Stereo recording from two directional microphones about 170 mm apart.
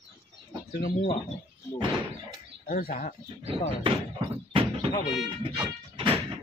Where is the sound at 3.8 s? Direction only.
30° right (ahead or behind).